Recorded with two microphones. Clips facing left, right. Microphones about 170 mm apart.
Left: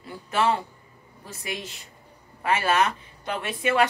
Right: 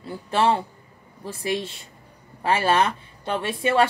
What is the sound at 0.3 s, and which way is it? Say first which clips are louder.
A woman's voice: right 3 dB; 30° right (ahead or behind).